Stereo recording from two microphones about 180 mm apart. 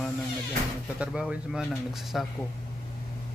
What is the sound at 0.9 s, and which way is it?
Speech, 5° right (ahead or behind).